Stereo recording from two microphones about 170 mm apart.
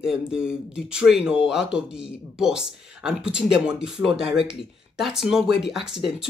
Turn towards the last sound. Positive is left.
turn(degrees=-5)  # may be behind; listen again after turning